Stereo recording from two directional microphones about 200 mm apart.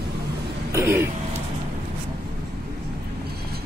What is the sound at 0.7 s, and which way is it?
Throat clearing, 10° right (ahead or behind).